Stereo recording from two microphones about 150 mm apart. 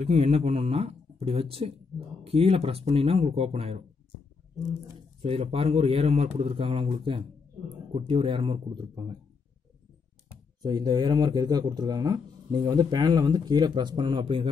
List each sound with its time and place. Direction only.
0.0 s speech: 40° right (ahead or behind)
5.2 s speech: 40° right (ahead or behind)
10.6 s speech: 25° right (ahead or behind)